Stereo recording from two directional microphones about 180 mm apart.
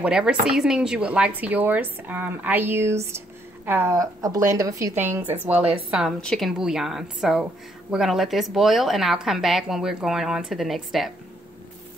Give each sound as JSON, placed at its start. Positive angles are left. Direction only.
{"t": 0.0, "sound": "speech", "side_deg": -5}